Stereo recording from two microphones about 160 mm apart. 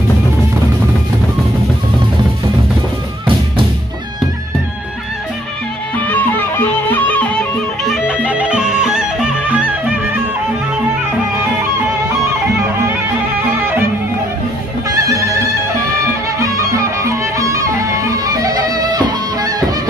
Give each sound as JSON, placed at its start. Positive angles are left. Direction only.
{"t": 5.9, "sound": "music", "side_deg": 10}
{"t": 7.8, "sound": "music", "side_deg": -5}
{"t": 14.9, "sound": "music", "side_deg": -20}
{"t": 16.3, "sound": "music", "side_deg": -20}